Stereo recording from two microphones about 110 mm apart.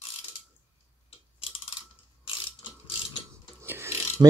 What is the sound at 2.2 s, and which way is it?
Mechanisms, 55° left (ahead or behind).